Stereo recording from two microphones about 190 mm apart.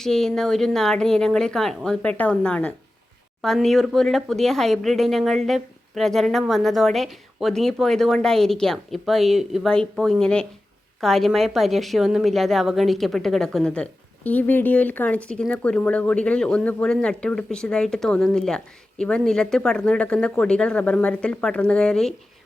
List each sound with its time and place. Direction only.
0.0 s speech: centre (ahead or behind)